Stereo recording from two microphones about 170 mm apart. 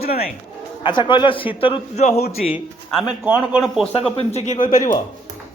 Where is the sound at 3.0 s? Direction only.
5° right (ahead or behind).